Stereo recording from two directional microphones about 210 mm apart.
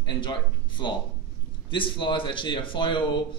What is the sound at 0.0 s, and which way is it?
A man's voice, 20° left (ahead or behind).